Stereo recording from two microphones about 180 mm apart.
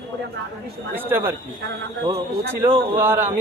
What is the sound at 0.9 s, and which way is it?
Speech, 10° right (ahead or behind).